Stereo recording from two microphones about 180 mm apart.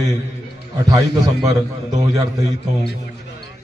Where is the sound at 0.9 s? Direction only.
20° right (ahead or behind).